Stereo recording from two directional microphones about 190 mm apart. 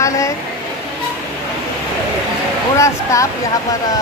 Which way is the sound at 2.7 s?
15° left (ahead or behind).